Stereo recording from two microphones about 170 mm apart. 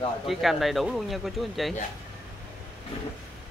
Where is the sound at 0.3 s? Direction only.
Centre (ahead or behind).